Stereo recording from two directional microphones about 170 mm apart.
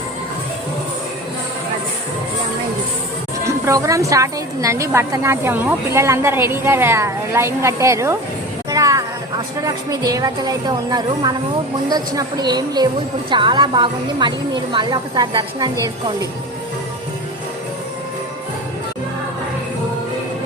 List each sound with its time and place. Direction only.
3.4 s a woman's voice: 20° right (ahead or behind)
8.7 s a sound: 20° right (ahead or behind)
9.6 s a woman's voice: 20° right (ahead or behind)